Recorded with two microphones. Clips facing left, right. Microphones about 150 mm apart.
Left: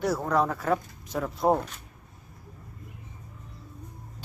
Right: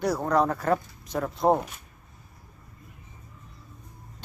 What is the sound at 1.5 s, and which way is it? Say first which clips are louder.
Speech: right 1 dB; 15° right (ahead or behind).